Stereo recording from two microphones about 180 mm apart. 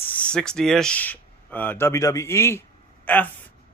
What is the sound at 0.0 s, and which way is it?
Speech, 10° left (ahead or behind).